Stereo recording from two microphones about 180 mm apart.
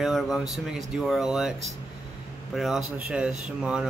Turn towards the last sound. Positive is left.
turn(degrees=-5)  # may be behind; listen again after turning